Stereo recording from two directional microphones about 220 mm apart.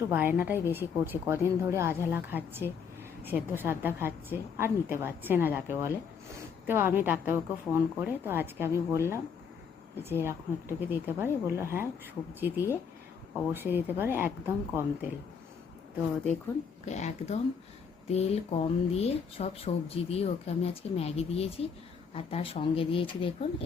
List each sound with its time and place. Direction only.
0.1 s a woman's voice: 10° right (ahead or behind)
16.8 s speech: 30° left (ahead or behind)